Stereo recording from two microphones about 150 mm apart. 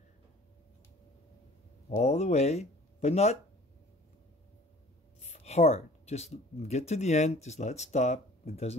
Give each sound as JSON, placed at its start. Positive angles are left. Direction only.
{"t": 1.9, "sound": "speech", "side_deg": 45}
{"t": 5.2, "sound": "speech", "side_deg": 45}